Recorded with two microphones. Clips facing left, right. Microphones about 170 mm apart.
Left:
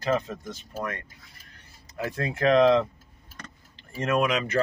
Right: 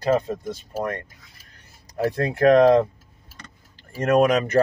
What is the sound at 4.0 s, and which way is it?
Speech, 45° right (ahead or behind).